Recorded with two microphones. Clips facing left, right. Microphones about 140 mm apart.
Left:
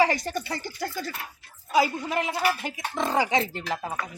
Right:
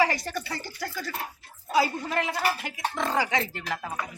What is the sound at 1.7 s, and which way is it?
A woman's voice, 15° left (ahead or behind).